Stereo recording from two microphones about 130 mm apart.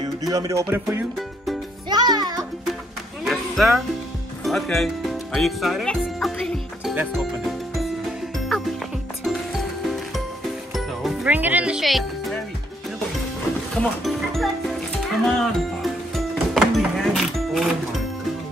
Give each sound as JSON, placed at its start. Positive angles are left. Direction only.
{"t": 0.0, "sound": "music", "side_deg": -30}
{"t": 1.9, "sound": "music", "side_deg": -30}
{"t": 3.3, "sound": "music", "side_deg": 0}
{"t": 11.2, "sound": "speech", "side_deg": -15}
{"t": 13.7, "sound": "music", "side_deg": 0}
{"t": 15.2, "sound": "speech", "side_deg": 0}
{"t": 16.5, "sound": "music", "side_deg": 0}